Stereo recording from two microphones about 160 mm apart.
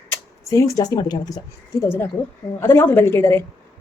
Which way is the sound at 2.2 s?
10° left (ahead or behind).